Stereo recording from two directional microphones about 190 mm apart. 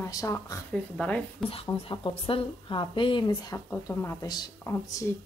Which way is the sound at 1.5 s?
30° left (ahead or behind).